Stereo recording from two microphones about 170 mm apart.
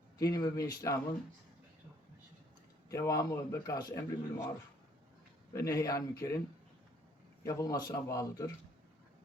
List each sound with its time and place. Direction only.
0.2 s a man's voice: 20° left (ahead or behind)
2.9 s a man's voice: 20° left (ahead or behind)
5.5 s a man's voice: 20° left (ahead or behind)
7.4 s a man's voice: 20° left (ahead or behind)